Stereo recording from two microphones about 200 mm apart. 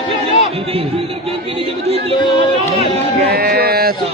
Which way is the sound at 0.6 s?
30° right (ahead or behind).